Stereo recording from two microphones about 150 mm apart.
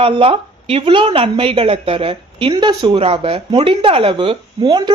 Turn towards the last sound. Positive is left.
turn(degrees=-30)  # may be behind; listen again after turning